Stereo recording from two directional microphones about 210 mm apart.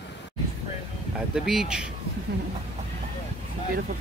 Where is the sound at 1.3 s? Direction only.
Centre (ahead or behind).